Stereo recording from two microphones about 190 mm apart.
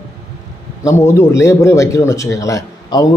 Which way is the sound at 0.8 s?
15° left (ahead or behind).